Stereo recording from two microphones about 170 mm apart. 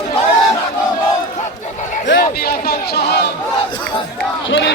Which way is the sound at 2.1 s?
65° left (ahead or behind).